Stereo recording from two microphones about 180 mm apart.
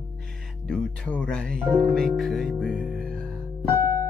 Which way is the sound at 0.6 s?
5° left (ahead or behind).